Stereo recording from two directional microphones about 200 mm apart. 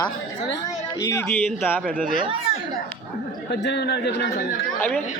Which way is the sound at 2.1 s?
25° right (ahead or behind).